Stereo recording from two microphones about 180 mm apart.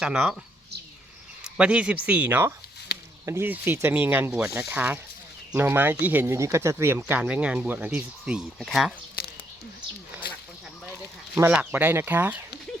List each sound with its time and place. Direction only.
0.0 s speech: 5° right (ahead or behind)
1.5 s speech: 5° right (ahead or behind)
2.9 s a sound: 55° left (ahead or behind)
3.2 s speech: 15° right (ahead or behind)
11.3 s speech: 10° right (ahead or behind)